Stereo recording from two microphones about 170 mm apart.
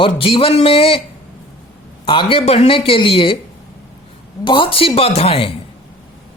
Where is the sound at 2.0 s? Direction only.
30° left (ahead or behind).